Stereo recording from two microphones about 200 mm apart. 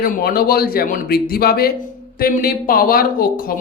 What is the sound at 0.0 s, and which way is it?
A woman's voice, 45° left (ahead or behind).